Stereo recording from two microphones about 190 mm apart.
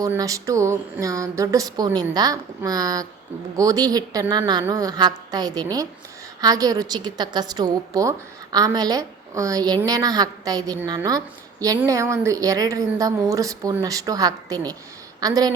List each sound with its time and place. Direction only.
0.0 s a woman's voice: 20° right (ahead or behind)